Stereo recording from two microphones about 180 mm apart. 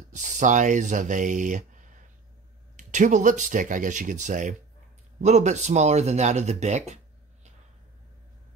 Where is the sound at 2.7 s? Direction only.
45° right (ahead or behind).